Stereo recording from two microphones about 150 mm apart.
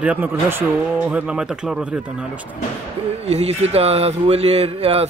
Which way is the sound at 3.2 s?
45° right (ahead or behind).